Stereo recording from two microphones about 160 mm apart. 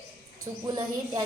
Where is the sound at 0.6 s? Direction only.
25° right (ahead or behind).